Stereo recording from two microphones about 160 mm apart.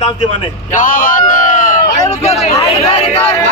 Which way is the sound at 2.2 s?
40° left (ahead or behind).